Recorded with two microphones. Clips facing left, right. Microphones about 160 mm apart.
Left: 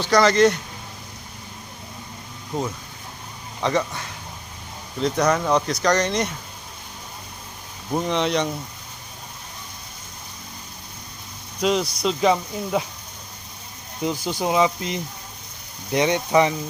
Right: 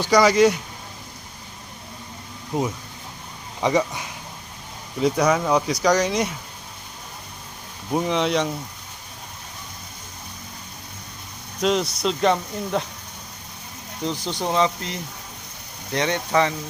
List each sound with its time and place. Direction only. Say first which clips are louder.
0.0 s speech: right 1 dB; 10° right (ahead or behind)
2.5 s speech: right 2 dB; 10° right (ahead or behind)
7.9 s speech: right 1 dB; 5° right (ahead or behind)
11.6 s speech: even; centre (ahead or behind)
14.0 s speech: left 2 dB; 10° left (ahead or behind)